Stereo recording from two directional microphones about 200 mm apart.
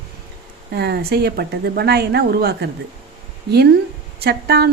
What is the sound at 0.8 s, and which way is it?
A woman's voice, 55° right (ahead or behind).